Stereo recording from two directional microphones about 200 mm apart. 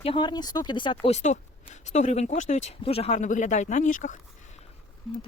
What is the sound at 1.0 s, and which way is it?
Speech, 35° left (ahead or behind).